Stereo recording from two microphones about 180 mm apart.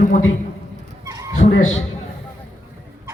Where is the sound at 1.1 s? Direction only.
20° right (ahead or behind).